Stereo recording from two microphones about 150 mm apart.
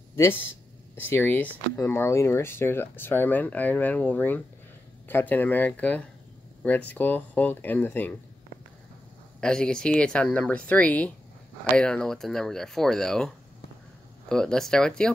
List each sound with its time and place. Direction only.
0.1 s speech: 15° left (ahead or behind)
9.4 s speech: 5° left (ahead or behind)
14.3 s speech: 5° left (ahead or behind)